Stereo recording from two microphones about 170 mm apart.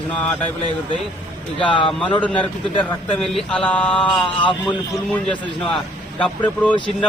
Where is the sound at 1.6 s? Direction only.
30° left (ahead or behind).